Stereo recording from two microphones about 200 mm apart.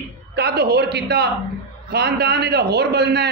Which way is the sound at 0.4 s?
55° right (ahead or behind).